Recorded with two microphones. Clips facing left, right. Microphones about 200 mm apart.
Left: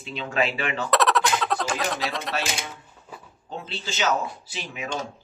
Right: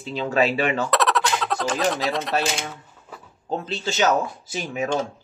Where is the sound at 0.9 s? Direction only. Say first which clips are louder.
Even; centre (ahead or behind).